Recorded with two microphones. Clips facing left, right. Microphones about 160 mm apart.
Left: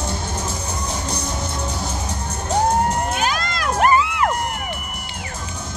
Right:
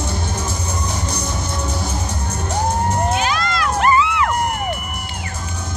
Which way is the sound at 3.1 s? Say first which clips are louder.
Right 3 dB; 45° left (ahead or behind).